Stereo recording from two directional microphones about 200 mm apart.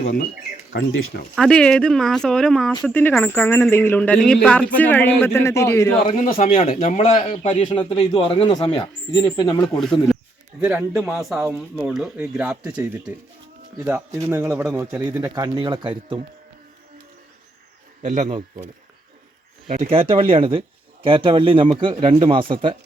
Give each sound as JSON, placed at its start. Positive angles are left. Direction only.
{"t": 0.0, "sound": "speech", "side_deg": 45}
{"t": 1.4, "sound": "speech", "side_deg": 5}
{"t": 6.0, "sound": "a man's voice", "side_deg": 35}
{"t": 7.7, "sound": "speech", "side_deg": 20}
{"t": 10.6, "sound": "speech", "side_deg": -5}
{"t": 18.0, "sound": "speech", "side_deg": -35}
{"t": 19.6, "sound": "speech", "side_deg": -40}
{"t": 19.9, "sound": "speech", "side_deg": -25}